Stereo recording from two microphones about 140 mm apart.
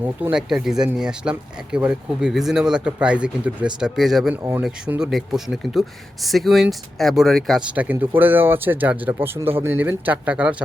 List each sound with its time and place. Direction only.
0.0 s speech: 10° right (ahead or behind)
7.7 s speech: 10° right (ahead or behind)